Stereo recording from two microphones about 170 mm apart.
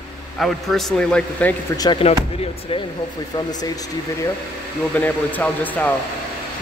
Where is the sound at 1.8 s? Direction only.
30° left (ahead or behind).